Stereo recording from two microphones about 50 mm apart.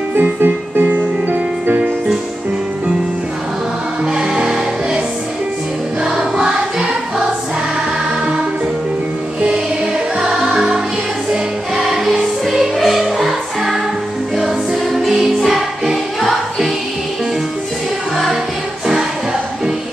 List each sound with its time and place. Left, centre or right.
0.1 s music: right
4.0 s music: centre
6.0 s music: centre
10.1 s music: centre
18.1 s music: centre